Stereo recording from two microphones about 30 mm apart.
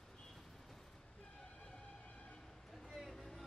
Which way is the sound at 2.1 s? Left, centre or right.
Left.